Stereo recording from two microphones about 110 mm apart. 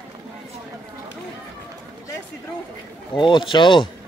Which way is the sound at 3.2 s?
50° left (ahead or behind).